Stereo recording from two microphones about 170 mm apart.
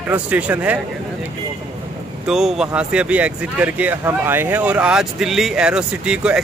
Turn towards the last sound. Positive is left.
turn(degrees=-5)  # may be behind; listen again after turning